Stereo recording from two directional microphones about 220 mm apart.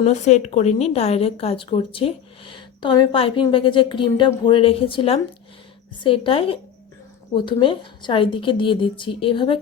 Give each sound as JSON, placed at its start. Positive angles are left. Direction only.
{"t": 0.0, "sound": "a woman's voice", "side_deg": 30}